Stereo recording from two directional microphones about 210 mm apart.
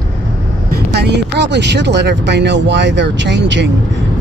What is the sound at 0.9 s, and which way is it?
Speech, 55° right (ahead or behind).